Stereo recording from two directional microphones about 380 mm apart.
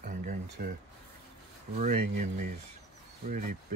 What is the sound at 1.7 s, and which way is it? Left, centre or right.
Speech, right.